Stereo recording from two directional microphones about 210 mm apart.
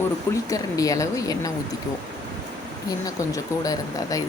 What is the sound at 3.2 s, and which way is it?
Speech, 15° left (ahead or behind).